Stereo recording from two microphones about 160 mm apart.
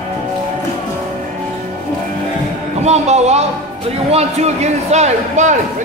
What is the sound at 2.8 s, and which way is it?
A man's voice, 45° right (ahead or behind).